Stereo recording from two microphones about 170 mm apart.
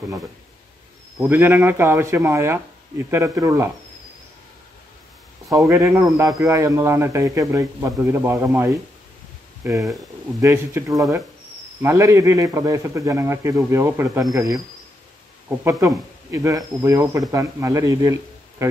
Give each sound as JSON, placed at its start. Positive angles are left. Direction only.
{"t": 1.2, "sound": "speech", "side_deg": -10}
{"t": 5.7, "sound": "speech", "side_deg": -15}
{"t": 16.3, "sound": "speech", "side_deg": -20}